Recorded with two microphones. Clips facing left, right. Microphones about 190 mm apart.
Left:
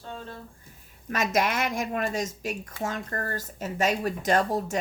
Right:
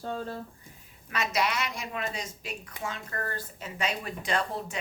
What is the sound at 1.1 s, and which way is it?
A woman's voice, 45° left (ahead or behind).